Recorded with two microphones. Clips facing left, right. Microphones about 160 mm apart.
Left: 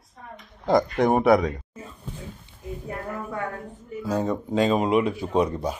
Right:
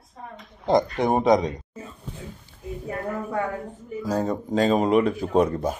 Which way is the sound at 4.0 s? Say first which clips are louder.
Even; 40° right (ahead or behind).